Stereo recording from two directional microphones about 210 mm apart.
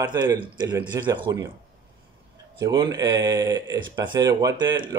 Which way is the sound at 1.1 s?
20° right (ahead or behind).